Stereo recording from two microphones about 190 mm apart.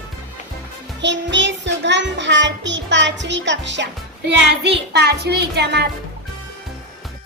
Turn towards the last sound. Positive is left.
turn(degrees=-60)  # may be behind; listen again after turning